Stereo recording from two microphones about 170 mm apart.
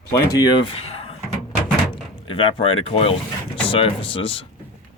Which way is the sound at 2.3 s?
30° left (ahead or behind).